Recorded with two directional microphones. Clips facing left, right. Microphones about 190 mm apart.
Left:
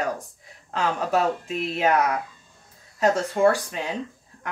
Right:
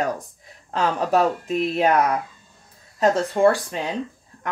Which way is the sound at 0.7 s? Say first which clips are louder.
Right 3 dB; 40° right (ahead or behind).